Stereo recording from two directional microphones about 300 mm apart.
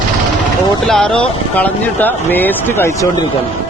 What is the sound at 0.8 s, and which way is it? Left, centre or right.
Speech, centre.